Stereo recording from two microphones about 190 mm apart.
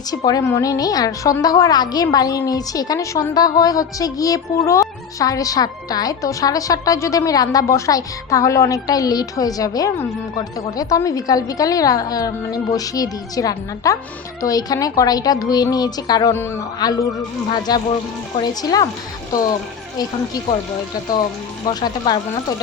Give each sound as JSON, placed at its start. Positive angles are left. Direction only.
{"t": 0.3, "sound": "a woman's voice", "side_deg": 15}
{"t": 20.0, "sound": "a woman's voice", "side_deg": 20}
{"t": 21.7, "sound": "a woman's voice", "side_deg": 20}